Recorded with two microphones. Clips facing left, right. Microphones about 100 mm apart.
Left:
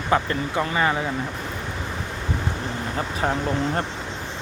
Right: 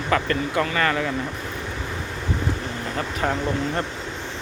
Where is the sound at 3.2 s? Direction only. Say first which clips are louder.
Even; 35° left (ahead or behind).